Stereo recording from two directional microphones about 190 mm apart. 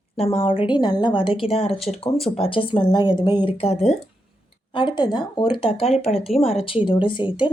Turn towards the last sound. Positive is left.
turn(degrees=25)  # may be behind; listen again after turning